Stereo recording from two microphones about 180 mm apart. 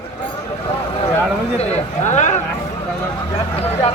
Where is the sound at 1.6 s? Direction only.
40° left (ahead or behind).